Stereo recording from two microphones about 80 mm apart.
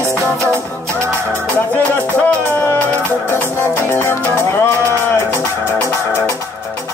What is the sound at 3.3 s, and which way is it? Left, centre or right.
Music, left.